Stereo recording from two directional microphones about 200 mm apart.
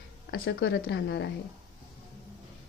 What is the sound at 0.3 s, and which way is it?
A woman's voice, 60° left (ahead or behind).